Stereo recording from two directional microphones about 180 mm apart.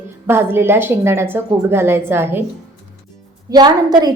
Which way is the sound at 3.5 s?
25° right (ahead or behind).